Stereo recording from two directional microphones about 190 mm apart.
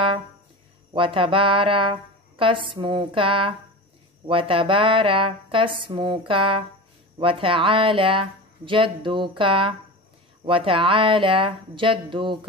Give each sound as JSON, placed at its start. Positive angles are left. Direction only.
{"t": 0.9, "sound": "speech", "side_deg": -25}